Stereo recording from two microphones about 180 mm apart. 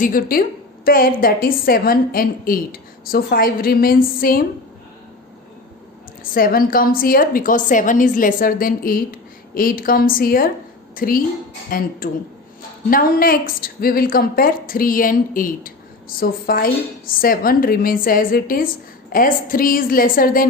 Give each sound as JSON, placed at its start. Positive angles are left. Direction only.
{"t": 0.0, "sound": "a woman's voice", "side_deg": 50}
{"t": 6.3, "sound": "a woman's voice", "side_deg": 55}